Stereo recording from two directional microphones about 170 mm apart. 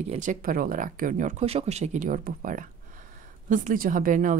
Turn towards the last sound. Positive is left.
turn(degrees=-50)  # may be behind; listen again after turning